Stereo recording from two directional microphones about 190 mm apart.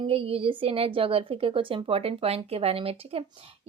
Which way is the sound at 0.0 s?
30° right (ahead or behind).